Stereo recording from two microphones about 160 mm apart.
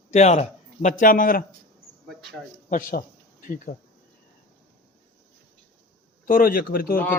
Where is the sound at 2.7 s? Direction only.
55° left (ahead or behind).